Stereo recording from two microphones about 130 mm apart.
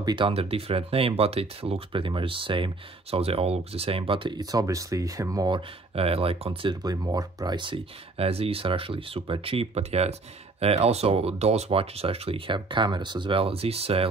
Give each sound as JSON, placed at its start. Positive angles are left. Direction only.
{"t": 0.0, "sound": "speech", "side_deg": -40}
{"t": 5.9, "sound": "speech", "side_deg": -50}
{"t": 6.8, "sound": "speech", "side_deg": -30}